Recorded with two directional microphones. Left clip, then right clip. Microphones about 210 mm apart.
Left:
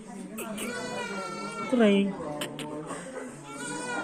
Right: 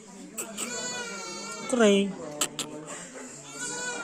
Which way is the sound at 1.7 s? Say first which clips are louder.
Right 2 dB; 30° right (ahead or behind).